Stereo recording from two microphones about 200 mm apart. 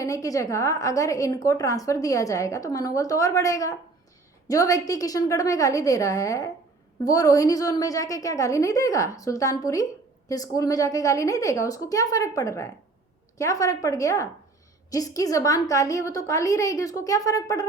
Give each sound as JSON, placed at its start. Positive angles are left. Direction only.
{"t": 0.0, "sound": "a woman's voice", "side_deg": 15}